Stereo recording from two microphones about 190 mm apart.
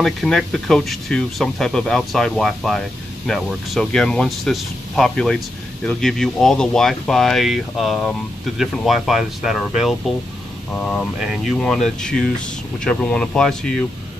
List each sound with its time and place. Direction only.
0.0 s speech: centre (ahead or behind)